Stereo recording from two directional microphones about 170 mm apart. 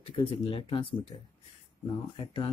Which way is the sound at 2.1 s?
30° left (ahead or behind).